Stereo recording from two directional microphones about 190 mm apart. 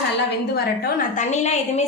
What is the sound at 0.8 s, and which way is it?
A woman's voice, 40° left (ahead or behind).